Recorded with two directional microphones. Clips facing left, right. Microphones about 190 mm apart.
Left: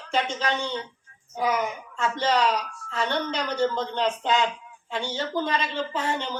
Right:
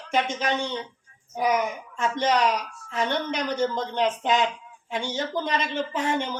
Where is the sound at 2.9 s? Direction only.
15° right (ahead or behind).